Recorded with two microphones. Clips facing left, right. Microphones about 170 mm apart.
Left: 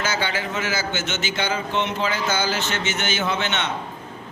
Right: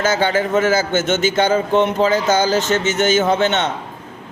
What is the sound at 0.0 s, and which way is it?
Speech, 45° right (ahead or behind).